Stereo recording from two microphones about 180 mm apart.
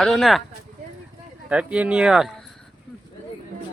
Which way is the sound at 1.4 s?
5° right (ahead or behind).